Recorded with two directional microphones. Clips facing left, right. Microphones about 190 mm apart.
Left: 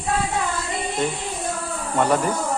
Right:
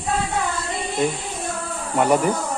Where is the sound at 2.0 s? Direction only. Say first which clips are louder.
Right 2 dB; 15° right (ahead or behind).